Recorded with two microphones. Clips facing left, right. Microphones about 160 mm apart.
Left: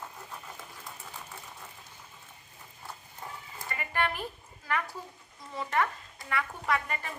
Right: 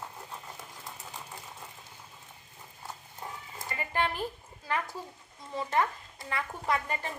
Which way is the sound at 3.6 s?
25° right (ahead or behind).